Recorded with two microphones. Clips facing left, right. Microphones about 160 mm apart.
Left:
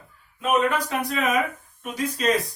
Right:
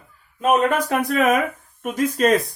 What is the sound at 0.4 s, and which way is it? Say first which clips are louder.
Speech: right 4 dB; 50° right (ahead or behind).